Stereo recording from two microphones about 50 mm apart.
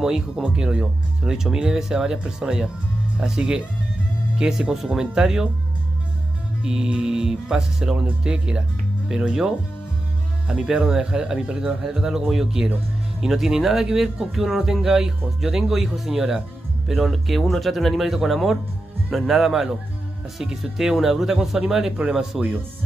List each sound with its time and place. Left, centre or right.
0.0 s speech: centre
6.6 s speech: centre
10.5 s speech: centre